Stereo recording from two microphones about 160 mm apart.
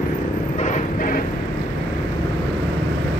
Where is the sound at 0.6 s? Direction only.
55° left (ahead or behind).